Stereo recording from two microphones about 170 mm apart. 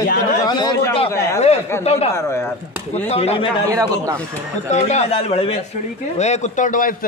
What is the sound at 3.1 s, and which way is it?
Speech, 35° left (ahead or behind).